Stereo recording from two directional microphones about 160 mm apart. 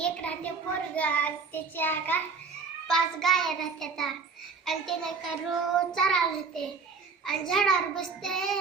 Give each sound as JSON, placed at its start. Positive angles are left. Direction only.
{"t": 0.0, "sound": "a sound", "side_deg": 10}
{"t": 0.9, "sound": "a child's voice", "side_deg": 10}
{"t": 7.3, "sound": "a child's voice", "side_deg": 5}